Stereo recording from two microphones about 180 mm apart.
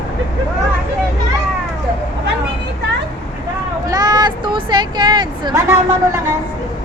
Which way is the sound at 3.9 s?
20° right (ahead or behind).